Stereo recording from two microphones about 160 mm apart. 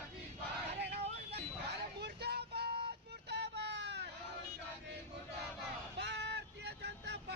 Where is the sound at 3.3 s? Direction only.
90° right.